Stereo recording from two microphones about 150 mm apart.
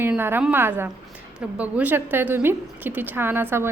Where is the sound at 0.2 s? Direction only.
15° right (ahead or behind).